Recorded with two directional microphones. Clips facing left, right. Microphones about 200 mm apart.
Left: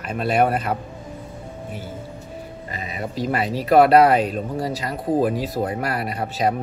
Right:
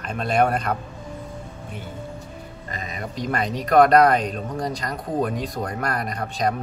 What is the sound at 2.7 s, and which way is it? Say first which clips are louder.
Speech: left 1 dB; 40° right (ahead or behind).